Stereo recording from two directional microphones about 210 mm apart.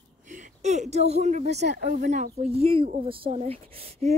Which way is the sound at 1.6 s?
50° right (ahead or behind).